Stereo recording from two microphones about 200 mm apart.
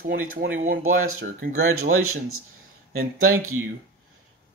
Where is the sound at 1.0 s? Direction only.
90° right.